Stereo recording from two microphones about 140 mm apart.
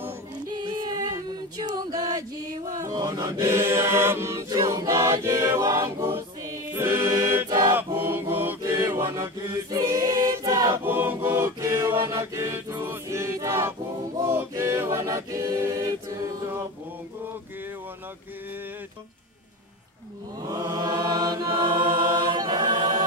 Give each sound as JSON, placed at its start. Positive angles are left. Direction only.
{"t": 0.6, "sound": "music", "side_deg": -30}
{"t": 6.7, "sound": "choir", "side_deg": -20}
{"t": 7.7, "sound": "chant", "side_deg": -15}
{"t": 9.1, "sound": "choir", "side_deg": -25}
{"t": 20.4, "sound": "choir", "side_deg": -25}
{"t": 21.5, "sound": "a capella", "side_deg": -35}